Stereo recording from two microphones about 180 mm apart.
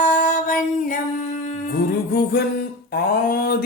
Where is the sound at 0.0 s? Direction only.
45° left (ahead or behind).